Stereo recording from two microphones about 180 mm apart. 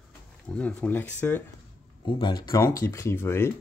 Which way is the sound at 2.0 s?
25° left (ahead or behind).